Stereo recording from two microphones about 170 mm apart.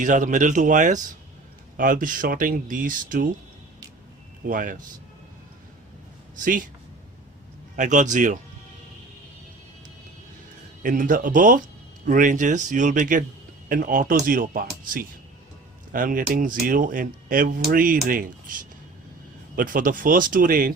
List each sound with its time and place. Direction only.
0.0 s speech: 50° right (ahead or behind)
4.4 s speech: 50° right (ahead or behind)
6.4 s speech: 50° right (ahead or behind)
7.8 s speech: 45° right (ahead or behind)
10.8 s speech: 50° right (ahead or behind)